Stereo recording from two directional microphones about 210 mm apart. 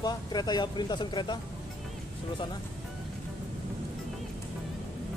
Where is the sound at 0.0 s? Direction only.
20° left (ahead or behind).